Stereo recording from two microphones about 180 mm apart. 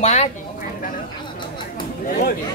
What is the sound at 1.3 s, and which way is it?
Chatter, 25° left (ahead or behind).